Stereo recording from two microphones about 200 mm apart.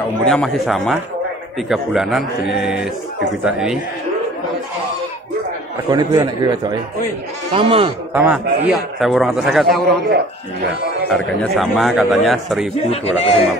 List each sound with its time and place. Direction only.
0.2 s a man's voice: centre (ahead or behind)
5.9 s a man's voice: 20° right (ahead or behind)
8.1 s a man's voice: 5° right (ahead or behind)
11.1 s a man's voice: centre (ahead or behind)
12.9 s a man's voice: 30° left (ahead or behind)